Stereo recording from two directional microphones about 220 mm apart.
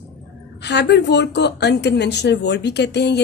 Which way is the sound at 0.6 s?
50° left (ahead or behind).